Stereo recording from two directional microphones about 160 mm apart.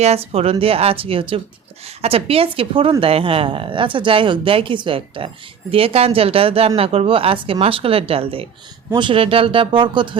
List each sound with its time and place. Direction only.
0.0 s speech: 40° right (ahead or behind)